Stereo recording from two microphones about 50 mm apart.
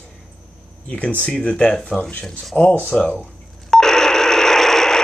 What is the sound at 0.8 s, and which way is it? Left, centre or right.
Speech, left.